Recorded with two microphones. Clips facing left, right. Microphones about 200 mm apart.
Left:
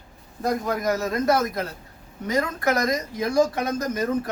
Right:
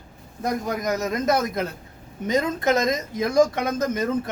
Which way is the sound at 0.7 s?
20° right (ahead or behind).